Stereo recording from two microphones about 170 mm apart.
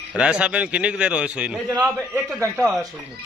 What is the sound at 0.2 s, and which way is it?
A man's voice, 5° right (ahead or behind).